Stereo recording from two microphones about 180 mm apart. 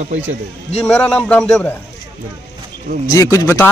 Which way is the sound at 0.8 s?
5° left (ahead or behind).